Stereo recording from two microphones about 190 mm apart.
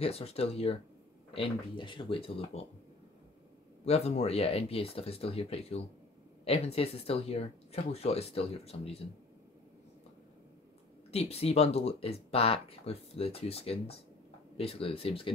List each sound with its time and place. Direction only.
0.0 s speech: 30° left (ahead or behind)
3.8 s speech: 35° left (ahead or behind)
11.1 s speech: 35° left (ahead or behind)